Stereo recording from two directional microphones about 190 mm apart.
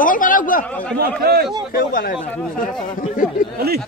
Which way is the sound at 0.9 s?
55° right (ahead or behind).